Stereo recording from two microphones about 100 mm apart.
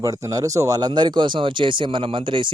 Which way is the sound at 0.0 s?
35° right (ahead or behind).